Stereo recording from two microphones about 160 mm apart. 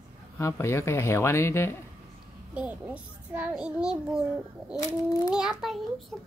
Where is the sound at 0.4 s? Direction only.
15° left (ahead or behind).